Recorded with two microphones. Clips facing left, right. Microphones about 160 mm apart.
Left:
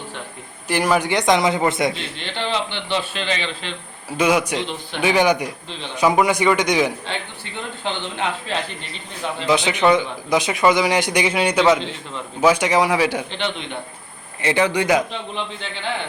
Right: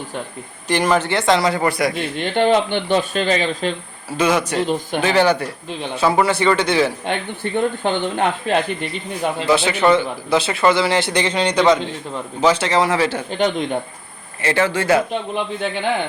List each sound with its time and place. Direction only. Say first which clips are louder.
0.7 s a man's voice: right 1 dB; 10° left (ahead or behind)
1.9 s speech: right 7 dB; 50° right (ahead or behind)
4.2 s a man's voice: right 1 dB; 10° left (ahead or behind)
4.6 s speech: right 7 dB; 45° right (ahead or behind)
5.0 s a man's voice: even; 15° left (ahead or behind)
7.1 s speech: right 8 dB; 50° right (ahead or behind)
9.5 s a man's voice: right 1 dB; 15° left (ahead or behind)
13.3 s speech: right 7 dB; 45° right (ahead or behind)
14.4 s a man's voice: even; 15° left (ahead or behind)